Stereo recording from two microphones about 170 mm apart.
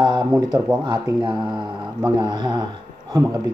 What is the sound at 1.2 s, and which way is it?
Speech, 25° right (ahead or behind).